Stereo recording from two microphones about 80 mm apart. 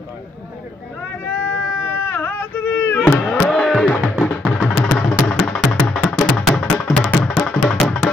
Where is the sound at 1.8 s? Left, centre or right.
Left.